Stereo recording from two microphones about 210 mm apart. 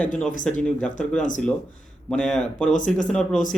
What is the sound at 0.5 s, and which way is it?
Speech, 5° left (ahead or behind).